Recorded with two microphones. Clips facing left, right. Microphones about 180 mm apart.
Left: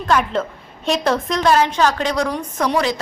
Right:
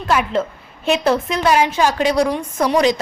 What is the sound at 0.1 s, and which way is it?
A woman's voice, 5° right (ahead or behind).